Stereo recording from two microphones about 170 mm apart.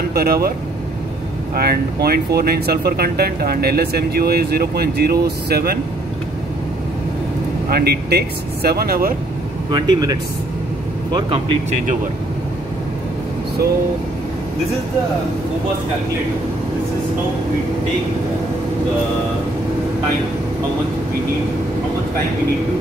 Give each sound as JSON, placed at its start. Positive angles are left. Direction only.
{"t": 0.1, "sound": "speech", "side_deg": -65}
{"t": 1.5, "sound": "speech", "side_deg": -65}
{"t": 7.7, "sound": "speech", "side_deg": -70}
{"t": 9.7, "sound": "speech", "side_deg": -25}
{"t": 11.1, "sound": "speech", "side_deg": -30}